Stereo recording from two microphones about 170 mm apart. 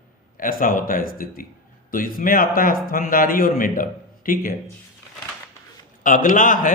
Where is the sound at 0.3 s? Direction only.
55° left (ahead or behind).